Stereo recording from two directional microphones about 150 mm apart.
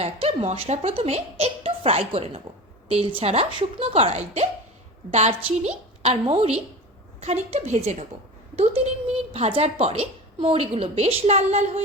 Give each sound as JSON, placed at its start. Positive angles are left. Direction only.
{"t": 0.0, "sound": "a woman's voice", "side_deg": -40}